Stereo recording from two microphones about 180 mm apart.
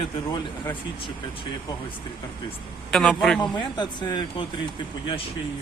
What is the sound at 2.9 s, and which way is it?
Speech, centre (ahead or behind).